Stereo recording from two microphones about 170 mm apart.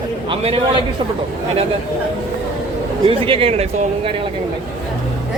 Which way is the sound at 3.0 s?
35° right (ahead or behind).